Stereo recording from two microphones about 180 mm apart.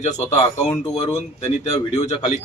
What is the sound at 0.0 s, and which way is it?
Speech, 40° left (ahead or behind).